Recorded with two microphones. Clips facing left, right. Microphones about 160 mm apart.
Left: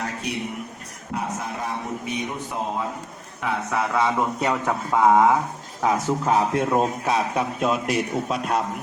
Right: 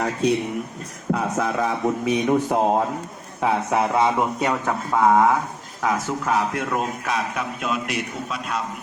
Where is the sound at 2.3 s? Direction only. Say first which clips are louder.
Right 9 dB; 65° right (ahead or behind).